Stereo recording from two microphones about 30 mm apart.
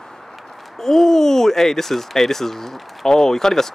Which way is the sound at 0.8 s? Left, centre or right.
Centre.